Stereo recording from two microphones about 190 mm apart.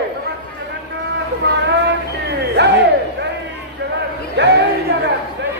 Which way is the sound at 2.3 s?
60° right (ahead or behind).